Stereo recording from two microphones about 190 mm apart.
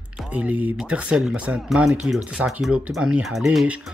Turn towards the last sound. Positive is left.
turn(degrees=0)  # may be behind; listen again after turning